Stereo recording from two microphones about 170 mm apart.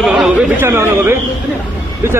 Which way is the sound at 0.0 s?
5° right (ahead or behind).